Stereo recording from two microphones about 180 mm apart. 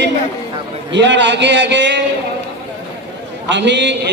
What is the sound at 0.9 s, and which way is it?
A man's voice, 80° right.